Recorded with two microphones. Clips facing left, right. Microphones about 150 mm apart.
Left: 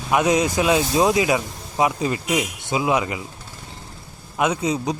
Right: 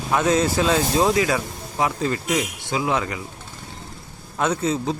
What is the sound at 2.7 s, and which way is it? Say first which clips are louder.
Speech: left 3 dB; 20° left (ahead or behind).